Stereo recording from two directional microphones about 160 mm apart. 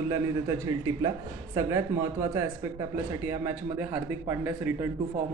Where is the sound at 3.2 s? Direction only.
15° right (ahead or behind).